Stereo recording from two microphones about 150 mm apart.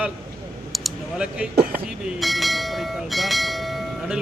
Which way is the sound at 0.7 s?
Centre (ahead or behind).